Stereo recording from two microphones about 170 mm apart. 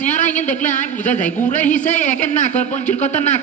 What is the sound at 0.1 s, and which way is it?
A woman's voice, 45° left (ahead or behind).